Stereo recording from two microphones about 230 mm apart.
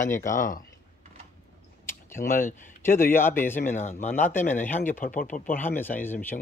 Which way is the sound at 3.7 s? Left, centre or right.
Left.